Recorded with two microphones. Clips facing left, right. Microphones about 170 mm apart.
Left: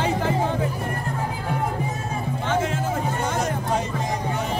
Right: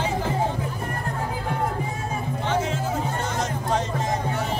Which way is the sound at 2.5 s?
55° left (ahead or behind).